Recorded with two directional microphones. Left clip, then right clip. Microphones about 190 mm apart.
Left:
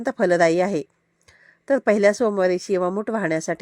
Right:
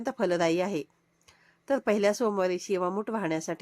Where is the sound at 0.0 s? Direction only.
25° left (ahead or behind).